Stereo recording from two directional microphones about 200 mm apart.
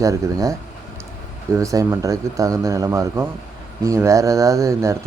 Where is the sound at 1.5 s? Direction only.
15° right (ahead or behind).